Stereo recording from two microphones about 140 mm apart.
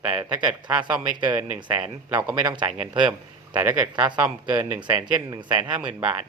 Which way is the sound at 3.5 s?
15° right (ahead or behind).